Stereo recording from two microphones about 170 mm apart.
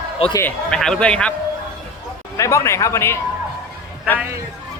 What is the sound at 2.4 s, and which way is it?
Speech, 15° left (ahead or behind).